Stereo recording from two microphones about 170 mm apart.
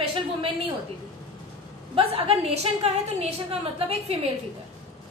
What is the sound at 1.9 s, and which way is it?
A woman's voice, 35° right (ahead or behind).